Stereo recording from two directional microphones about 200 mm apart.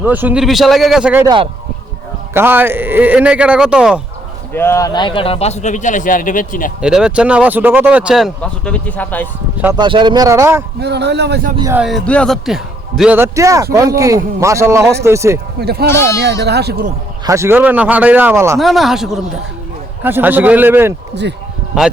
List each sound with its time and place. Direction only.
0.0 s speech: 10° right (ahead or behind)
1.2 s speech: 20° right (ahead or behind)
2.3 s speech: 10° right (ahead or behind)
4.5 s a man's voice: 15° left (ahead or behind); by 6.7 s 40° left (ahead or behind)
6.8 s speech: 5° right (ahead or behind)
9.7 s speech: 25° right (ahead or behind)
10.8 s a man's voice: 55° right (ahead or behind)
11.7 s speech: centre (ahead or behind)
15.6 s a man's voice: 50° right (ahead or behind)
17.2 s speech: 15° right (ahead or behind)
18.6 s speech: centre (ahead or behind)